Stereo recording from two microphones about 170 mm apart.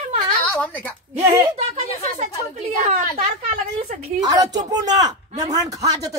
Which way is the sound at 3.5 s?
35° right (ahead or behind).